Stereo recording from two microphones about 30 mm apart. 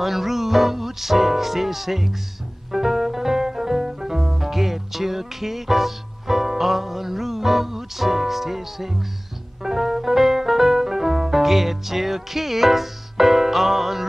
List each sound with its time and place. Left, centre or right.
0.0 s speech: centre
2.7 s music: centre